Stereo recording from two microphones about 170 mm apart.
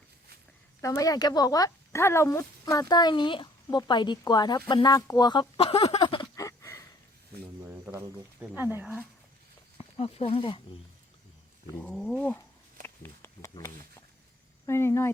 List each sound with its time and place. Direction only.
0.8 s speech: 20° left (ahead or behind)
6.4 s a sound: 20° left (ahead or behind)
7.6 s speech: 15° right (ahead or behind)
9.7 s speech: 35° left (ahead or behind)
11.8 s dog: 5° left (ahead or behind)
12.8 s a sound: 15° left (ahead or behind)
14.7 s speech: 15° left (ahead or behind)